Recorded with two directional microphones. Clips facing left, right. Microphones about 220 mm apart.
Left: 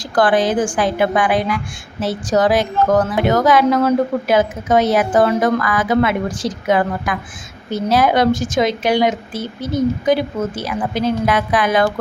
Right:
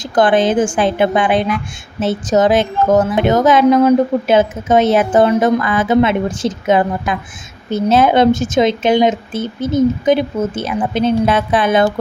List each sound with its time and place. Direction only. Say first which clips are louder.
0.0 s a woman's voice: right 3 dB; 20° right (ahead or behind)